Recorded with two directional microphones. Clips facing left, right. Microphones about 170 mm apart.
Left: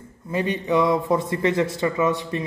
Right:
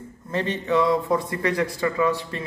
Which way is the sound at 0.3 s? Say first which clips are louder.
Left 1 dB; 10° left (ahead or behind).